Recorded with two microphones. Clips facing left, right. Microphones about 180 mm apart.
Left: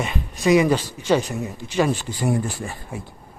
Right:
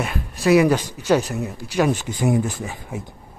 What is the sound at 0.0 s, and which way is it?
A man's voice, centre (ahead or behind).